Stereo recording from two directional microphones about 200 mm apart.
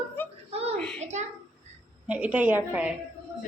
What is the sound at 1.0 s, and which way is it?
Speech, 35° right (ahead or behind).